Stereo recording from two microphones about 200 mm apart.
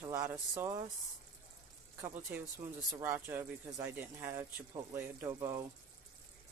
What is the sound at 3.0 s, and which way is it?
Speech, 10° right (ahead or behind).